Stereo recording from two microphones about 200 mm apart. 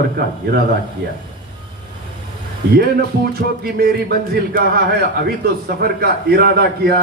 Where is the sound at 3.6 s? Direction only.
50° right (ahead or behind).